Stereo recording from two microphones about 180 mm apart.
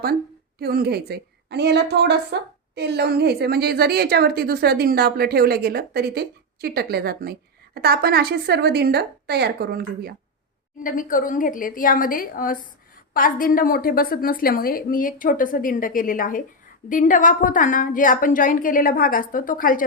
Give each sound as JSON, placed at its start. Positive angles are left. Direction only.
{"t": 0.6, "sound": "a woman's voice", "side_deg": -60}
{"t": 10.8, "sound": "a woman's voice", "side_deg": 50}